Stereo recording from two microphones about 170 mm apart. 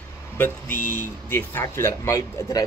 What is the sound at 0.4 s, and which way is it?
Speech, 10° left (ahead or behind).